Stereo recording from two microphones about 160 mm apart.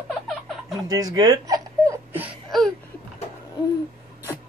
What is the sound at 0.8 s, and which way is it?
Baby laughter, 25° right (ahead or behind).